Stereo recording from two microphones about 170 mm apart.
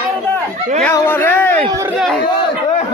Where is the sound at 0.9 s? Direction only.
10° left (ahead or behind).